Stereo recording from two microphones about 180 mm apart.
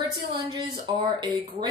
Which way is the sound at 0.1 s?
25° right (ahead or behind).